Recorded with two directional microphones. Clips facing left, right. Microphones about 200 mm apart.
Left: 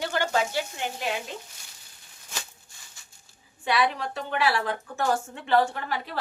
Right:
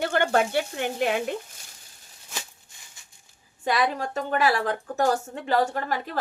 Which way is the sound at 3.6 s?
40° right (ahead or behind).